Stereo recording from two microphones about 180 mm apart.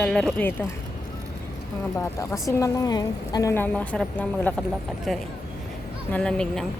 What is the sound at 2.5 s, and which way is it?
A woman's voice, 15° left (ahead or behind).